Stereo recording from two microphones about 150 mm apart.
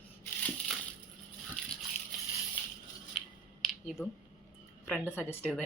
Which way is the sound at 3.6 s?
Centre (ahead or behind).